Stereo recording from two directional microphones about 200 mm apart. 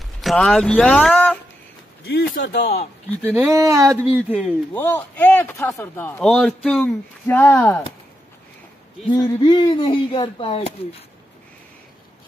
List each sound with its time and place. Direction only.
0.2 s speech: centre (ahead or behind)
2.0 s a man's voice: 50° left (ahead or behind)
3.4 s a sound: 15° right (ahead or behind)
4.7 s speech: 10° left (ahead or behind)
9.1 s speech: 20° left (ahead or behind)